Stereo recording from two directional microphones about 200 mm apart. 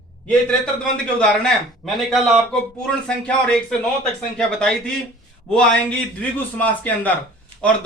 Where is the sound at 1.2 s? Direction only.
5° left (ahead or behind).